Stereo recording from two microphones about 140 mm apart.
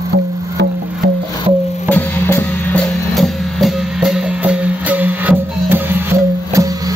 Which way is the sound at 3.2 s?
Centre (ahead or behind).